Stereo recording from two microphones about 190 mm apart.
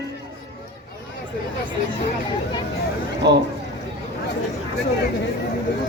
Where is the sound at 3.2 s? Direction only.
65° right (ahead or behind).